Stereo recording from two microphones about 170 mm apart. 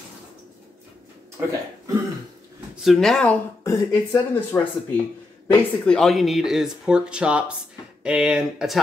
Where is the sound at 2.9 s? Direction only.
Centre (ahead or behind).